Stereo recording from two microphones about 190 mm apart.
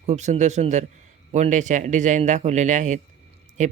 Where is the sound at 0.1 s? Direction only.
35° right (ahead or behind).